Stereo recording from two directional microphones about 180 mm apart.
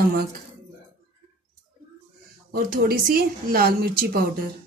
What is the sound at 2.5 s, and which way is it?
A woman's voice, 55° right (ahead or behind).